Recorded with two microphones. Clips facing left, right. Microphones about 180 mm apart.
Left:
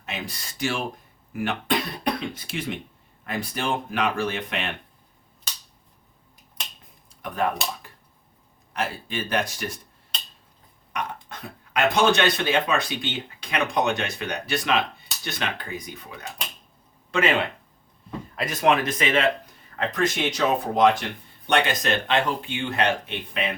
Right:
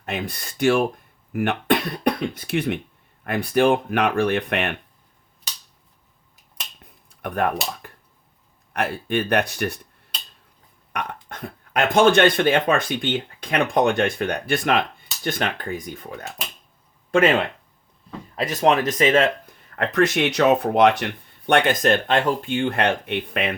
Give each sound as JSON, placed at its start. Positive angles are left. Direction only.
{"t": 0.0, "sound": "speech", "side_deg": -55}
{"t": 6.8, "sound": "a sound", "side_deg": -60}
{"t": 8.7, "sound": "speech", "side_deg": -60}
{"t": 10.9, "sound": "speech", "side_deg": -55}
{"t": 18.3, "sound": "speech", "side_deg": -35}
{"t": 19.7, "sound": "speech", "side_deg": -65}